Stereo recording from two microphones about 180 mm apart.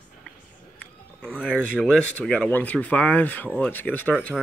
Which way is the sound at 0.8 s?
5° left (ahead or behind).